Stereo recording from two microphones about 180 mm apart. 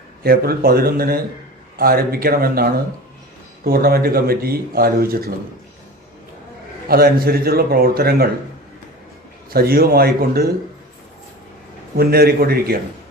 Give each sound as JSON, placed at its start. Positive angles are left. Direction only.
{"t": 0.2, "sound": "speech", "side_deg": -60}
{"t": 6.8, "sound": "speech", "side_deg": -55}
{"t": 9.5, "sound": "speech", "side_deg": -55}
{"t": 11.9, "sound": "speech", "side_deg": -60}